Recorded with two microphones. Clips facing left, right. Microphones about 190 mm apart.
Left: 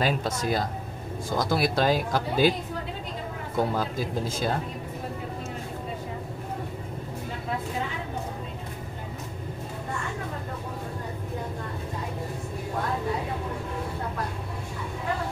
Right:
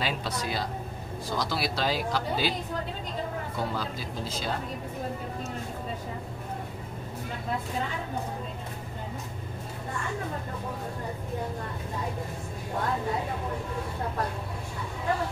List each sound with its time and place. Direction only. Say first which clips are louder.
0.0 s speech: left 5 dB; 45° left (ahead or behind)
3.5 s speech: left 9 dB; 50° left (ahead or behind)